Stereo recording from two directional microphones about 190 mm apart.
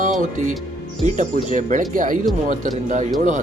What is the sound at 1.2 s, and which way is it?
Speech, 45° right (ahead or behind).